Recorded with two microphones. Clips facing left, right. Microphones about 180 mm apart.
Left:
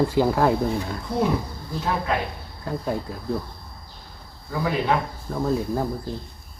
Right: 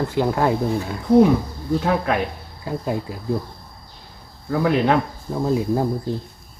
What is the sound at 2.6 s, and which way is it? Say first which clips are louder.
Speech: right 2 dB; 5° right (ahead or behind).